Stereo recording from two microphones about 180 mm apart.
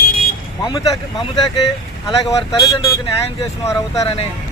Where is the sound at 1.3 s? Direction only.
25° left (ahead or behind).